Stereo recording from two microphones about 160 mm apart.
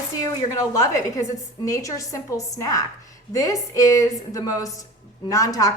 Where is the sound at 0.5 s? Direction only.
20° left (ahead or behind).